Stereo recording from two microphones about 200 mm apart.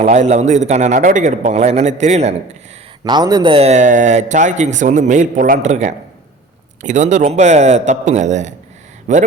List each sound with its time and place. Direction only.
0.0 s a man's voice: 35° right (ahead or behind)
3.0 s a man's voice: 20° right (ahead or behind); by 9.2 s 35° right (ahead or behind)